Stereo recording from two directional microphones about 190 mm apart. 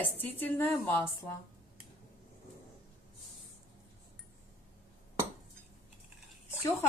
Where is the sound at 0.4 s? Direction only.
10° left (ahead or behind).